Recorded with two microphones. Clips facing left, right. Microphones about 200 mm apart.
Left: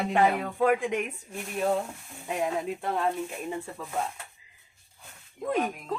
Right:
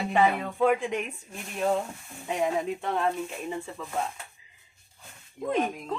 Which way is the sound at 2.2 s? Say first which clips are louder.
Right 2 dB; 5° left (ahead or behind).